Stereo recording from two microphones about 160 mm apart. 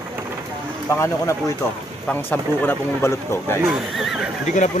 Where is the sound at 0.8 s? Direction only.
15° left (ahead or behind).